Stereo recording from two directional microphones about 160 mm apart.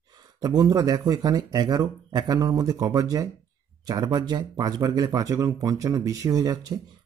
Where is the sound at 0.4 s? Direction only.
25° right (ahead or behind).